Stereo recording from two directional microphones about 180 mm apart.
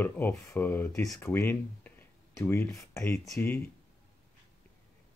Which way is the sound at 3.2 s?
Centre (ahead or behind).